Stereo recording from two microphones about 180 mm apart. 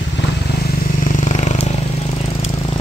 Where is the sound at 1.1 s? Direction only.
40° left (ahead or behind).